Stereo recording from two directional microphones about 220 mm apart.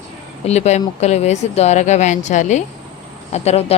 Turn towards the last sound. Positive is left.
turn(degrees=30)  # may be behind; listen again after turning